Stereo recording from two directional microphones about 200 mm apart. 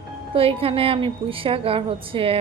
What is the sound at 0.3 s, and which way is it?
A woman's voice, 30° right (ahead or behind).